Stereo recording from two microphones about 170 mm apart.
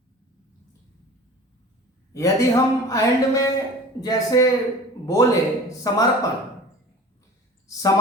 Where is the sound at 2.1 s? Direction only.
20° left (ahead or behind).